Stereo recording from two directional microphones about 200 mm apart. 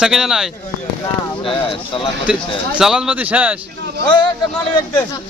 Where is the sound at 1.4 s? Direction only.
25° left (ahead or behind).